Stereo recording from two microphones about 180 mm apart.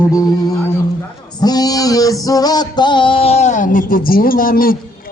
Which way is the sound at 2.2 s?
20° left (ahead or behind).